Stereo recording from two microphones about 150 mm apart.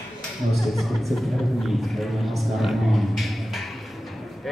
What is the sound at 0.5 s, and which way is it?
Speech, centre (ahead or behind).